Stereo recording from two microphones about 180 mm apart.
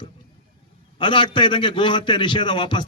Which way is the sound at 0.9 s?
25° left (ahead or behind).